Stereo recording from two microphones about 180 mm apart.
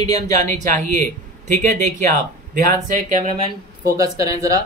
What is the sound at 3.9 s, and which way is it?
Speech, 20° right (ahead or behind).